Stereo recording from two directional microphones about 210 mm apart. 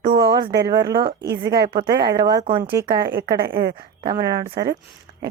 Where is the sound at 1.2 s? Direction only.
50° right (ahead or behind).